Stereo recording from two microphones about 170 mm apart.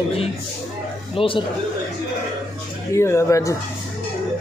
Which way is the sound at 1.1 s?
30° left (ahead or behind).